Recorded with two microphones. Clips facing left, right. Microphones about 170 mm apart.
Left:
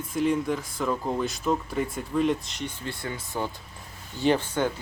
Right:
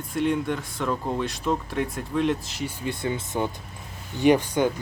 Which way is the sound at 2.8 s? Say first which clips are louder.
Right 6 dB; 20° right (ahead or behind).